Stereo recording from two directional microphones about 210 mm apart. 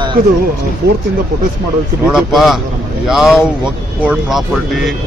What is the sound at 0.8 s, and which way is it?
Speech, 50° right (ahead or behind).